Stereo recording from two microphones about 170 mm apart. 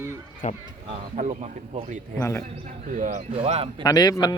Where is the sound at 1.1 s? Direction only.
45° right (ahead or behind).